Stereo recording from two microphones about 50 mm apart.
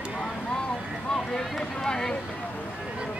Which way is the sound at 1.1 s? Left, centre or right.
Centre.